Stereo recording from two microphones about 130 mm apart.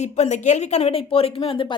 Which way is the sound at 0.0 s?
60° left (ahead or behind).